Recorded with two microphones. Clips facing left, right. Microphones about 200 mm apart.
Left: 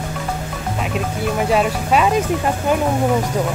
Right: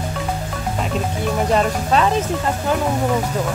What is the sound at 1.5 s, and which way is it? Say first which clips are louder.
Speech: left 1 dB; 5° left (ahead or behind).